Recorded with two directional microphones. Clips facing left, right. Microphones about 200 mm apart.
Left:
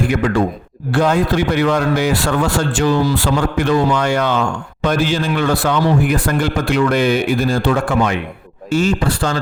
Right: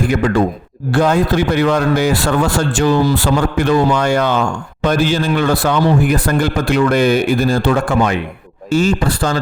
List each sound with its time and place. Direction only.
0.9 s a man's voice: 40° right (ahead or behind)